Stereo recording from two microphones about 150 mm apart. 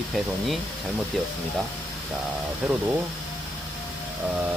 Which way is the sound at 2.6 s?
5° right (ahead or behind).